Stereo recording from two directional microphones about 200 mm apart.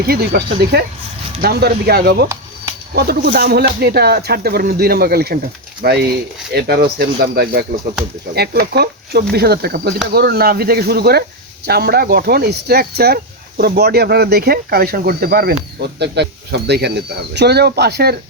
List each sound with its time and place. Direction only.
0.0 s speech: 50° right (ahead or behind)